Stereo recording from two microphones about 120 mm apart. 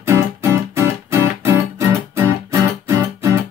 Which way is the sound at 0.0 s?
20° right (ahead or behind).